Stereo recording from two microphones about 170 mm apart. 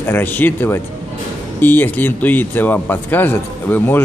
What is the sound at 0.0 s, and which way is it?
Speech, 15° left (ahead or behind).